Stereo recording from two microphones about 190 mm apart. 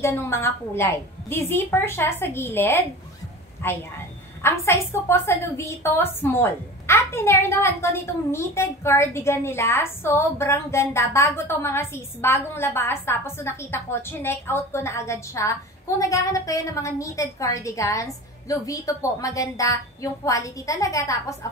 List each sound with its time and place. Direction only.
0.0 s a woman's voice: 15° left (ahead or behind)